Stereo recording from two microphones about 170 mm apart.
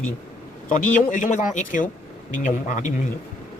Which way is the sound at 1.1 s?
45° left (ahead or behind).